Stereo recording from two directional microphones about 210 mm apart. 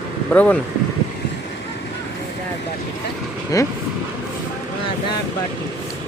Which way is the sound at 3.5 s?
15° left (ahead or behind).